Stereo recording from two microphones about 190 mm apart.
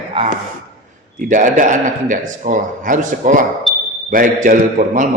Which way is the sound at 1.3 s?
45° right (ahead or behind).